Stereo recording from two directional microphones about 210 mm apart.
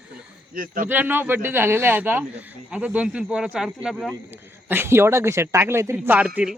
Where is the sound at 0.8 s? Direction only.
10° right (ahead or behind).